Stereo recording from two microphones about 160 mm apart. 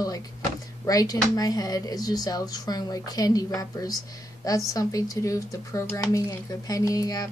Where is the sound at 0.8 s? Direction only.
20° left (ahead or behind).